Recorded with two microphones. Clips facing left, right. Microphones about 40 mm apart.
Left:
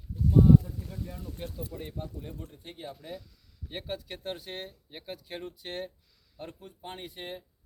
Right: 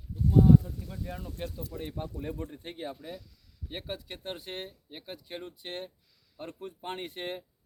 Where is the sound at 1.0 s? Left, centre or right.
Right.